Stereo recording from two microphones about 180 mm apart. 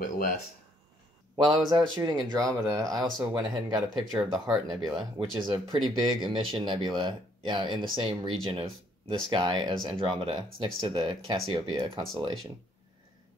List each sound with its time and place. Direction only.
0.0 s speech: 50° left (ahead or behind)
1.3 s a man's voice: 25° right (ahead or behind)
4.2 s speech: centre (ahead or behind)
4.6 s a man's voice: 20° right (ahead or behind)